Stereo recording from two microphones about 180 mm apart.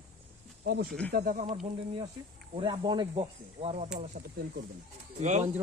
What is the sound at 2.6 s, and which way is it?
Speech, 25° right (ahead or behind).